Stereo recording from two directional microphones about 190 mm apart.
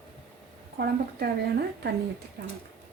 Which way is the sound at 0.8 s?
55° right (ahead or behind).